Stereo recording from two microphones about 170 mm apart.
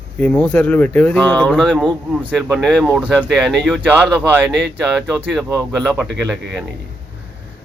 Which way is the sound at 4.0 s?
10° right (ahead or behind).